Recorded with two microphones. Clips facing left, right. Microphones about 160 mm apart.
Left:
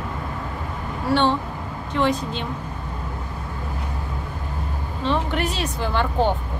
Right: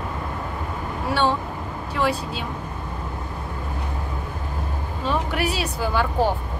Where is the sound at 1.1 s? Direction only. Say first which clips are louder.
Left 3 dB; 5° right (ahead or behind).